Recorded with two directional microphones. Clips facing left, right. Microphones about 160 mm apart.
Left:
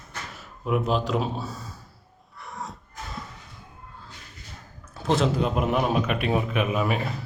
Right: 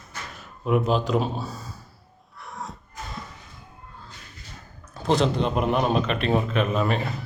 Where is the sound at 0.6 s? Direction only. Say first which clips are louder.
Right 2 dB; centre (ahead or behind).